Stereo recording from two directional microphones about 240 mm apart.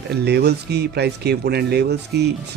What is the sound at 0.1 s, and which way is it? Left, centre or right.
Speech, right.